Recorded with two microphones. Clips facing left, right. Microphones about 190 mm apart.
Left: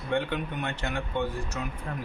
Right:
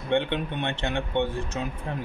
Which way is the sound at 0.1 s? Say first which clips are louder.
Right 4 dB; 25° right (ahead or behind).